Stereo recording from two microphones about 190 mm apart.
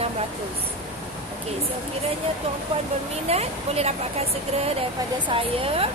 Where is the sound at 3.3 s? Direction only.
35° right (ahead or behind).